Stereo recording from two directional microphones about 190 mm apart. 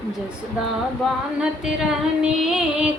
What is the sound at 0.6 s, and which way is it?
Female singing, 5° right (ahead or behind).